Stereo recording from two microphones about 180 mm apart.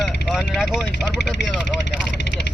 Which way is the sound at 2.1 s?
70° left (ahead or behind).